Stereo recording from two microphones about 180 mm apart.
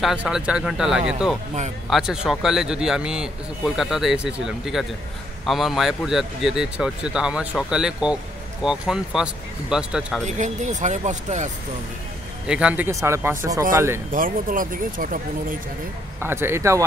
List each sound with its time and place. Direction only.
0.0 s a man's voice: 5° right (ahead or behind)
10.2 s speech: 40° right (ahead or behind)
12.4 s speech: 5° right (ahead or behind)
14.1 s speech: 50° right (ahead or behind)
16.2 s speech: 15° right (ahead or behind)